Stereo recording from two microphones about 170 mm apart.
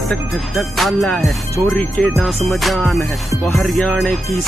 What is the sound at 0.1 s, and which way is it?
Music, centre (ahead or behind).